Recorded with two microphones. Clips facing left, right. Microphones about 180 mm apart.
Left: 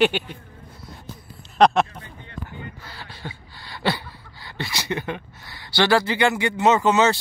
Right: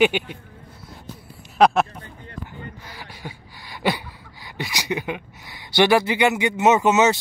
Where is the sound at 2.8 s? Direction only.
15° right (ahead or behind).